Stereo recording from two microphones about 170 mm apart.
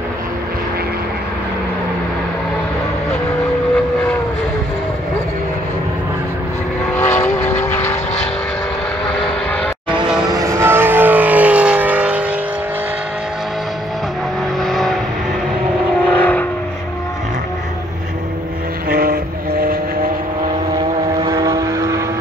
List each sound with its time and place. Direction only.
7.0 s vehicle: 10° left (ahead or behind)
9.2 s vehicle: 5° left (ahead or behind)
10.3 s vehicle: 15° right (ahead or behind)
14.6 s vehicle: centre (ahead or behind)
16.1 s vehicle: 10° left (ahead or behind)
18.9 s vehicle: 60° right (ahead or behind)
21.2 s vehicle: 20° right (ahead or behind)